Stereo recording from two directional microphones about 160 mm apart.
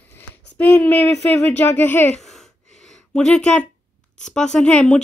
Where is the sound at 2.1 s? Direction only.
Centre (ahead or behind).